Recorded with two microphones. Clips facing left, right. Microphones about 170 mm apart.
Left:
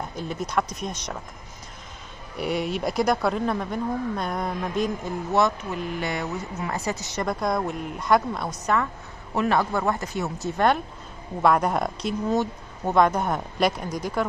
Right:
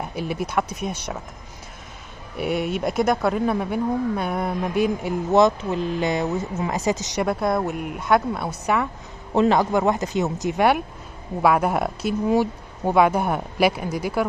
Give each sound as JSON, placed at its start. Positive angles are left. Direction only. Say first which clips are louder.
{"t": 0.3, "sound": "speech", "louder": "right 1 dB", "side_deg": -5}
{"t": 2.3, "sound": "speech", "louder": "right 2 dB", "side_deg": 0}
{"t": 5.3, "sound": "speech", "louder": "right 6 dB", "side_deg": -25}
{"t": 7.2, "sound": "speech", "louder": "right 1 dB", "side_deg": -5}
{"t": 9.3, "sound": "speech", "louder": "right 5 dB", "side_deg": -20}
{"t": 11.4, "sound": "speech", "louder": "right 2 dB", "side_deg": -5}